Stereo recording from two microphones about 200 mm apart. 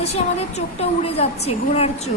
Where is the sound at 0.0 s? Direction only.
30° left (ahead or behind).